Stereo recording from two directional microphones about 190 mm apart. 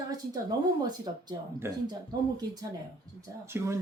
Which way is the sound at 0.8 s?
20° right (ahead or behind).